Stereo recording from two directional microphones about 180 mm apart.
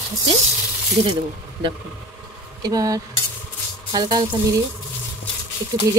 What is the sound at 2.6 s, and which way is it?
Speech, 20° right (ahead or behind).